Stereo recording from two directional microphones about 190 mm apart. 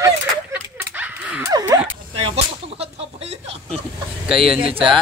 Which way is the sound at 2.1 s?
30° right (ahead or behind).